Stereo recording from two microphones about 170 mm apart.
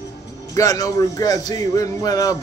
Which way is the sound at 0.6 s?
20° left (ahead or behind).